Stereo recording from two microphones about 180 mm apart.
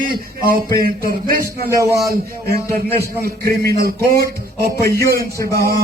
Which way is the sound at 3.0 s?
60° right (ahead or behind).